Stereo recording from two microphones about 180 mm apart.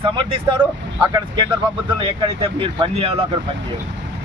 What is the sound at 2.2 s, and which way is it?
Speech, 30° right (ahead or behind).